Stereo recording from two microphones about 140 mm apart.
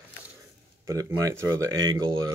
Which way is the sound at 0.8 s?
25° right (ahead or behind).